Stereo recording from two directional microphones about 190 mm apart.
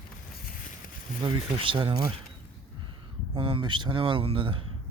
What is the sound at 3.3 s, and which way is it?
Speech, 25° right (ahead or behind).